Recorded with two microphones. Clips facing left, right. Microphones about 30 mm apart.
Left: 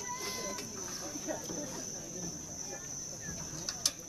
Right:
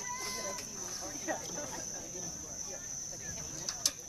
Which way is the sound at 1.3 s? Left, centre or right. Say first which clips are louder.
Right 2 dB; centre.